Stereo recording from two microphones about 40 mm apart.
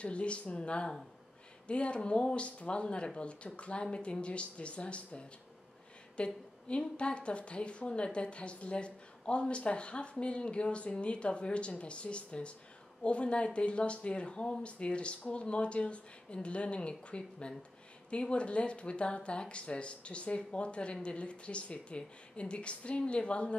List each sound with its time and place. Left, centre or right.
0.0 s a woman's voice: left